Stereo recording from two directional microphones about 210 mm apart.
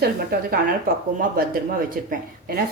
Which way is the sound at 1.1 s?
45° right (ahead or behind).